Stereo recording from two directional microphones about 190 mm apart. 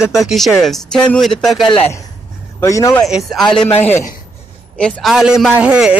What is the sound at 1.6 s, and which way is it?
Speech, 30° left (ahead or behind).